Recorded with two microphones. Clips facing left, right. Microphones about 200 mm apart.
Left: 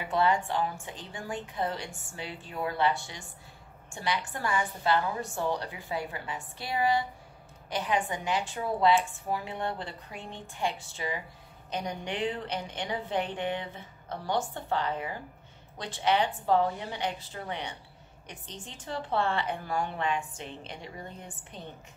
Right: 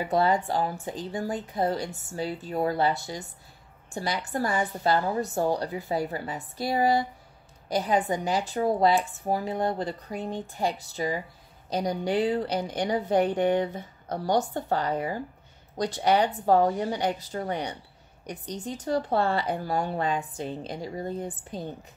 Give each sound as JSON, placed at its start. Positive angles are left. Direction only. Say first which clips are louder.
{"t": 0.0, "sound": "speech", "louder": "right 3 dB", "side_deg": -40}